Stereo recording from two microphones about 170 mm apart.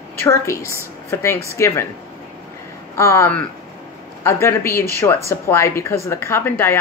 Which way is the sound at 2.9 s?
15° left (ahead or behind).